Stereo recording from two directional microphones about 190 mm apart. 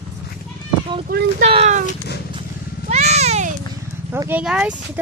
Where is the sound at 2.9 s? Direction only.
35° right (ahead or behind).